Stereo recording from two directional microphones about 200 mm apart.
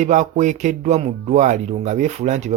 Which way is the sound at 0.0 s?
35° right (ahead or behind).